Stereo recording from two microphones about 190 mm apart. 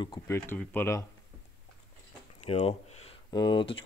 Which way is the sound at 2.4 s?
30° left (ahead or behind).